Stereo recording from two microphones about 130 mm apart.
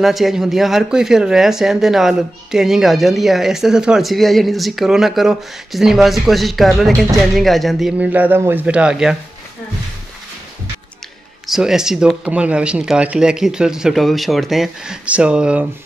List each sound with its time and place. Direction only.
0.0 s speech: centre (ahead or behind)
8.0 s speech: 15° right (ahead or behind)
11.4 s speech: 5° right (ahead or behind)